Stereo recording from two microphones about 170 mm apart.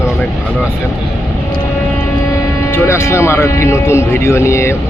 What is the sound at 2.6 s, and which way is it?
Speech, 15° left (ahead or behind).